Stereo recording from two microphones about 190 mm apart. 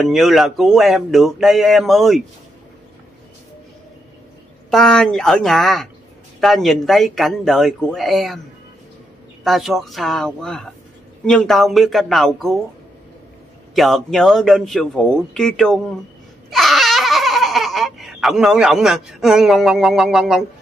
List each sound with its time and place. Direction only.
0.0 s speech: centre (ahead or behind)
4.6 s speech: 5° left (ahead or behind)
9.4 s speech: centre (ahead or behind)
13.7 s speech: centre (ahead or behind)
16.4 s babbling: centre (ahead or behind)